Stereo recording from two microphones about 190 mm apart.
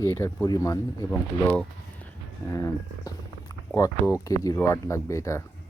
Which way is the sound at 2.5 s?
15° left (ahead or behind).